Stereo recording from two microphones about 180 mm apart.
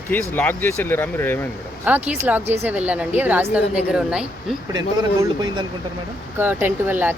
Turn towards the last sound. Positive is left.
turn(degrees=-10)  # may be behind; listen again after turning